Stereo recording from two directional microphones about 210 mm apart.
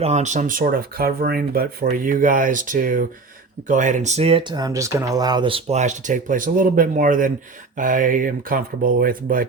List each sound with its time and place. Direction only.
0.0 s speech: 30° right (ahead or behind)